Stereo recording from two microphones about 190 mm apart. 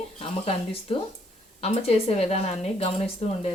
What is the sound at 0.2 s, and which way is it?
Speech, 30° left (ahead or behind).